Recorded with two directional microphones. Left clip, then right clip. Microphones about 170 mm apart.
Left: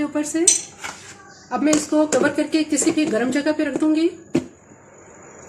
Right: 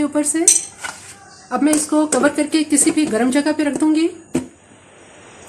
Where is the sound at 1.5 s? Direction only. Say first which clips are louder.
Right 2 dB; 40° right (ahead or behind).